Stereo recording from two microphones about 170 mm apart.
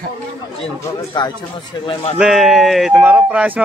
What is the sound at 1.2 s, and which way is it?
A man's voice, 25° left (ahead or behind).